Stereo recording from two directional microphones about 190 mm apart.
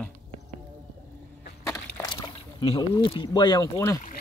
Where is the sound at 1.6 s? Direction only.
10° left (ahead or behind).